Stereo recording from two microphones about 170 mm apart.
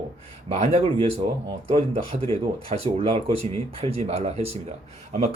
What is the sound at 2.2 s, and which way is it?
Speech, 35° right (ahead or behind).